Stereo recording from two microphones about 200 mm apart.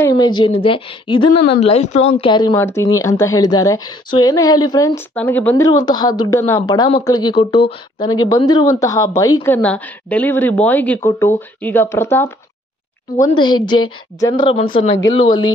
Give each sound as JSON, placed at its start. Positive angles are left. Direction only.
{"t": 0.0, "sound": "a woman's voice", "side_deg": 20}
{"t": 2.5, "sound": "speech", "side_deg": 15}
{"t": 5.7, "sound": "a woman's voice", "side_deg": 20}
{"t": 13.4, "sound": "a woman's voice", "side_deg": 20}
{"t": 15.0, "sound": "speech", "side_deg": 90}